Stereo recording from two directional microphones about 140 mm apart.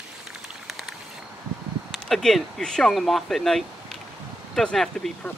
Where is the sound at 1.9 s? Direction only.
Centre (ahead or behind).